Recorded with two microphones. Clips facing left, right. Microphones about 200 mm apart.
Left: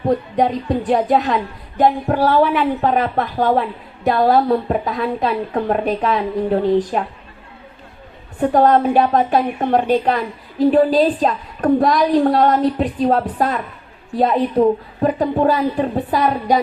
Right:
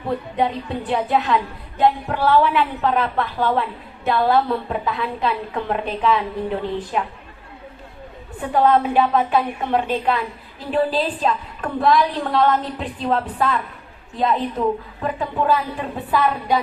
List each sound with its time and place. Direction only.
0.1 s a woman's voice: 40° left (ahead or behind)
8.4 s a woman's voice: 40° left (ahead or behind)